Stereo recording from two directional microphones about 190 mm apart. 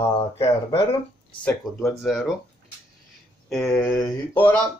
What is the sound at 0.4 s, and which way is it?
Speech, 25° left (ahead or behind).